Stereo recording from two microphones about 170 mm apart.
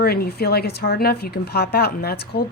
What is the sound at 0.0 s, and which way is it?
Speech, 65° left (ahead or behind).